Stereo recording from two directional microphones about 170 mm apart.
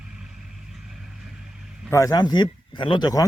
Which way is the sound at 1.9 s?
20° left (ahead or behind).